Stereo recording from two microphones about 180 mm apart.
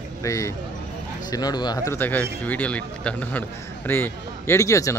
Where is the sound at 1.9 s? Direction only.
10° left (ahead or behind).